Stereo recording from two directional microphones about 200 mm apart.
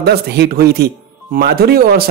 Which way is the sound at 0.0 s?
55° right (ahead or behind).